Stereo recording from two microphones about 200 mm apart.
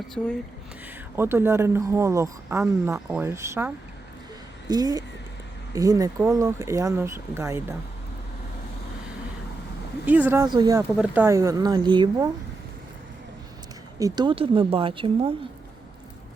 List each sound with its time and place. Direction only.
0.2 s speech: 5° left (ahead or behind)
1.1 s speech: 10° right (ahead or behind)
4.7 s speech: 20° right (ahead or behind)
10.1 s speech: 10° right (ahead or behind)
10.8 s speech: 5° right (ahead or behind); by 12.3 s 25° right (ahead or behind)
14.0 s speech: 25° right (ahead or behind)